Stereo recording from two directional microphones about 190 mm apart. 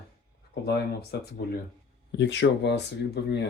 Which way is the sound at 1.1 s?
60° left (ahead or behind).